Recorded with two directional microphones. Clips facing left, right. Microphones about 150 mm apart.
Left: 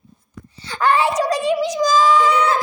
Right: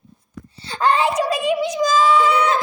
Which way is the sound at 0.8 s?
25° right (ahead or behind).